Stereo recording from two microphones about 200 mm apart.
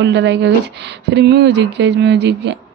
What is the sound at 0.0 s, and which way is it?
Speech, 60° right (ahead or behind).